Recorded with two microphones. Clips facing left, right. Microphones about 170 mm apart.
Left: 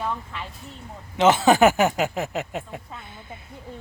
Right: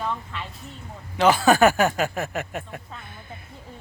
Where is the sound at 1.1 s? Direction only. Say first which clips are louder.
Left 1 dB; 20° left (ahead or behind).